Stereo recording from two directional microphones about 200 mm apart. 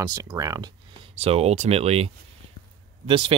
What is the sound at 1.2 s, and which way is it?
Speech, 30° right (ahead or behind).